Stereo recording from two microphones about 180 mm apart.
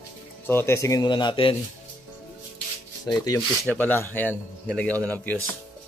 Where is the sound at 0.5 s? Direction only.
15° left (ahead or behind); by 1.6 s 30° left (ahead or behind).